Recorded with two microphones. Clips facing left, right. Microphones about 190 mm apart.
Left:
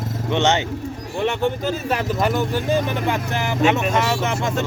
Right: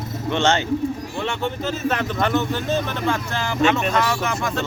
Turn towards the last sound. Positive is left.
turn(degrees=25)  # may be behind; listen again after turning